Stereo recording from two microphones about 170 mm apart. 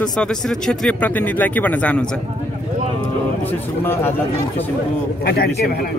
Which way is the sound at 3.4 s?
10° left (ahead or behind).